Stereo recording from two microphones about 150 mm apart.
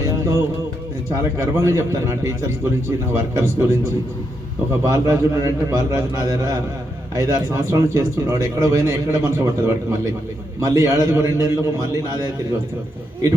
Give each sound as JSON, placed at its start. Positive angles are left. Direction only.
{"t": 0.1, "sound": "music", "side_deg": -20}
{"t": 1.1, "sound": "speech", "side_deg": -20}
{"t": 4.8, "sound": "speech", "side_deg": -20}